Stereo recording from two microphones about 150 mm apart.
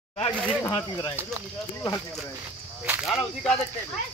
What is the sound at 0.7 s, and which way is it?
Speech, 20° left (ahead or behind).